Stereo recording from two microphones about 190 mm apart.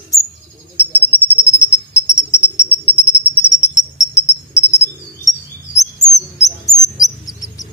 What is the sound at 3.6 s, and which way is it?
Cricket, 15° left (ahead or behind).